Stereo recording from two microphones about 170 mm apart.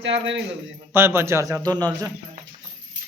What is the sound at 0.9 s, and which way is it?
Speech, 15° right (ahead or behind).